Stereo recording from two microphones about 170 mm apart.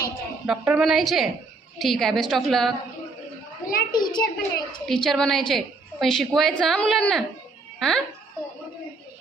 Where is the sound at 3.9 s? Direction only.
25° left (ahead or behind).